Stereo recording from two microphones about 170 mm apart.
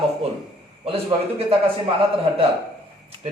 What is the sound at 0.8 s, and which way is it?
Speech, 35° right (ahead or behind).